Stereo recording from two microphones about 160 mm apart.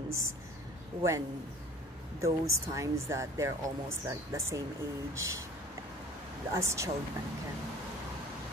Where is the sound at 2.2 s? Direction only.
20° right (ahead or behind).